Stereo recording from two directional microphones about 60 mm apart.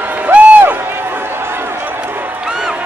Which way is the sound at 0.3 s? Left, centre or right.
Right.